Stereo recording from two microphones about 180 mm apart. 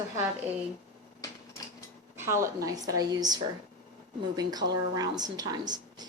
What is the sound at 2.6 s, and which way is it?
Speech, 20° right (ahead or behind).